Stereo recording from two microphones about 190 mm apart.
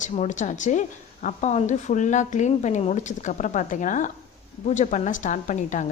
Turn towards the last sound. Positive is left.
turn(degrees=40)  # may be behind; listen again after turning